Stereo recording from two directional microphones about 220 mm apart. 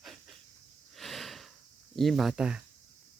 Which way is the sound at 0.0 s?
Centre (ahead or behind).